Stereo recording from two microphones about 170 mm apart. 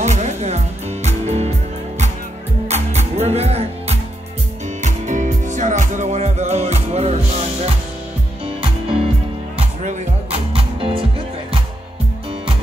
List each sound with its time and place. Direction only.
0.0 s music: 40° right (ahead or behind)
2.7 s music: 40° right (ahead or behind)